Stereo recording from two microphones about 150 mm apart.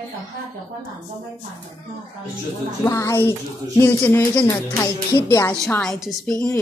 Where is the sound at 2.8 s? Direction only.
20° left (ahead or behind).